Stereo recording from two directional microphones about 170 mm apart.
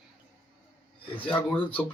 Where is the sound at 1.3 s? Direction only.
10° left (ahead or behind).